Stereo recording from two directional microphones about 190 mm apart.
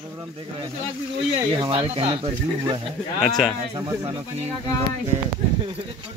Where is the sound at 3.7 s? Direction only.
20° right (ahead or behind).